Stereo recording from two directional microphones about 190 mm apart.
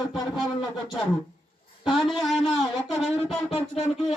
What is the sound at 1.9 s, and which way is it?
A man's voice, centre (ahead or behind).